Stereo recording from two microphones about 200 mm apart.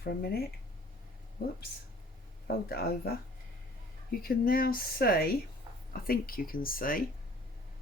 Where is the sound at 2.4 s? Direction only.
50° left (ahead or behind).